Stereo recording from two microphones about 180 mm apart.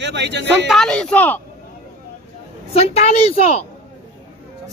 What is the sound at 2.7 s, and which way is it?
Speech, 35° left (ahead or behind).